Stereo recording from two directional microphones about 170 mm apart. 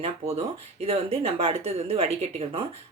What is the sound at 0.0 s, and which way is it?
Speech, 35° right (ahead or behind).